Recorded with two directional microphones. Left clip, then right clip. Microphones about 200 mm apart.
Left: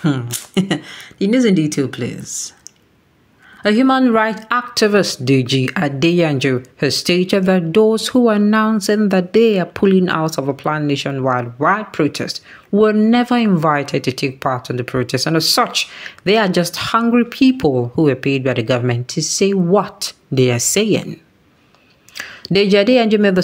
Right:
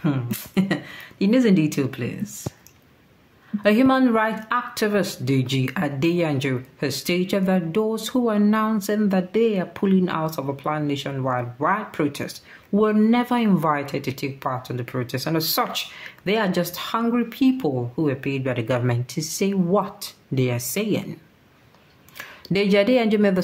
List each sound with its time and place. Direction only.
0.0 s speech: 30° left (ahead or behind)
3.6 s speech: 20° left (ahead or behind)